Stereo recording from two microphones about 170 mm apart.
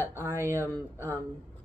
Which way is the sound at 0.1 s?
15° right (ahead or behind).